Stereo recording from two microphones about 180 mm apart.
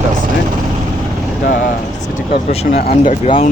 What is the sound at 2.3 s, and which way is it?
Speech, 55° left (ahead or behind).